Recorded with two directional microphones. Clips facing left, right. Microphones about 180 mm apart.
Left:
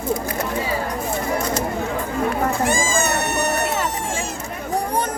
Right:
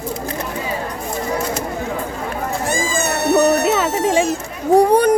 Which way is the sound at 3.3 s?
80° right.